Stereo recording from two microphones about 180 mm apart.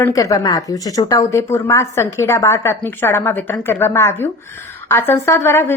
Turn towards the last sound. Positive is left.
turn(degrees=15)  # may be behind; listen again after turning